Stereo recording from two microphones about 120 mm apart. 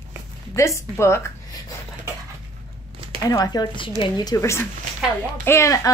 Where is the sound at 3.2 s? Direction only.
30° left (ahead or behind).